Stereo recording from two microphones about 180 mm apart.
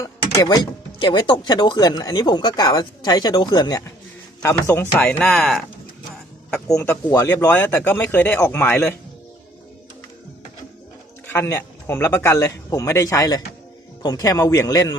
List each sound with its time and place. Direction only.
0.0 s speech: 15° left (ahead or behind)
11.3 s speech: 15° left (ahead or behind)